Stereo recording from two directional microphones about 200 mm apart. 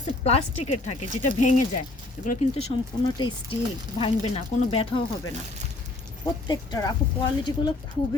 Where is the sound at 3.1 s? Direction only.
20° left (ahead or behind).